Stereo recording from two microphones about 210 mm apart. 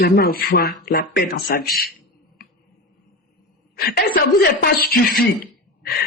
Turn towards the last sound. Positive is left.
turn(degrees=45)  # may be behind; listen again after turning